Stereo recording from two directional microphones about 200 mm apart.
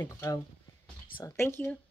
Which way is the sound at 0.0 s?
15° left (ahead or behind).